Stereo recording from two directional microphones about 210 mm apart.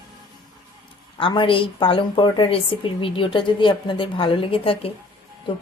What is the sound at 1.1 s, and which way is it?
Speech, 25° left (ahead or behind).